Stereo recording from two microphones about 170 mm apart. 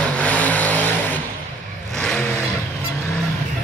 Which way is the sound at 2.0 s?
5° left (ahead or behind).